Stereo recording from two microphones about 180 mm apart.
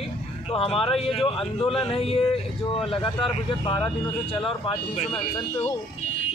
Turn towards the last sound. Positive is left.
turn(degrees=30)  # may be behind; listen again after turning